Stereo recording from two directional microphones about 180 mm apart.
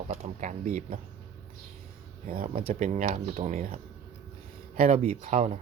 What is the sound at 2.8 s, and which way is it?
Speech, 40° right (ahead or behind).